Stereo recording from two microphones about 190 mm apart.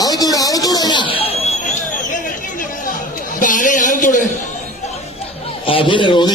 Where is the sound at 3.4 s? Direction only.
45° left (ahead or behind).